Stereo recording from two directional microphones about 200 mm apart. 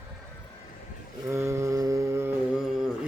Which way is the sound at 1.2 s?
15° right (ahead or behind).